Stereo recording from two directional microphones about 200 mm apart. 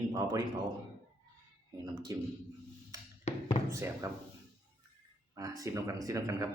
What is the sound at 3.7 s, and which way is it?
Speech, 15° right (ahead or behind).